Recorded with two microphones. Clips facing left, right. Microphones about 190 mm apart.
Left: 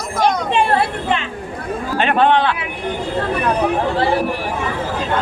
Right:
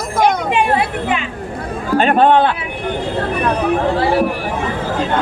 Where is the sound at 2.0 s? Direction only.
45° right (ahead or behind).